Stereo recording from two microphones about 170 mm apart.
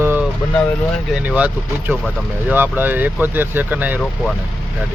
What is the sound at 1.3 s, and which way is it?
Speech, 10° right (ahead or behind).